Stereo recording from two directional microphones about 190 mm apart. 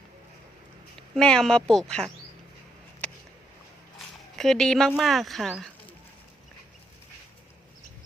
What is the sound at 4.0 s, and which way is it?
Speech, centre (ahead or behind).